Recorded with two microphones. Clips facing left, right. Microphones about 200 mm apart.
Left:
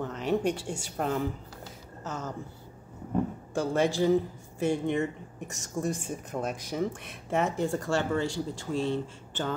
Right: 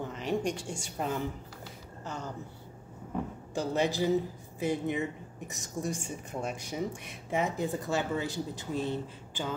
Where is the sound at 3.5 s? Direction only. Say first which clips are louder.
Left 3 dB; 50° left (ahead or behind).